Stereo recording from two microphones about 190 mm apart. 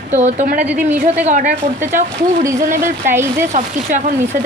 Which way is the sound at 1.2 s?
40° right (ahead or behind).